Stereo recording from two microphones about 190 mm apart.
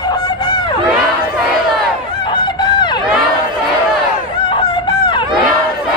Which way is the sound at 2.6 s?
25° left (ahead or behind).